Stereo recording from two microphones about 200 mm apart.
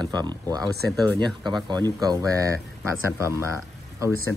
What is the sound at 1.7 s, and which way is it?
Speech, 20° right (ahead or behind).